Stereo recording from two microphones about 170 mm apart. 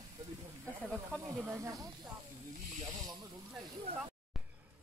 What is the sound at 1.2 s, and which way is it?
Speech, 15° right (ahead or behind).